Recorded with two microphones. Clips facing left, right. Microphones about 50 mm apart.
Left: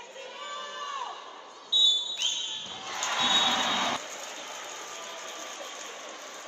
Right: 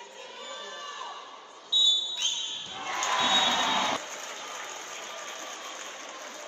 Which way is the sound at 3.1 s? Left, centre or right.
Centre.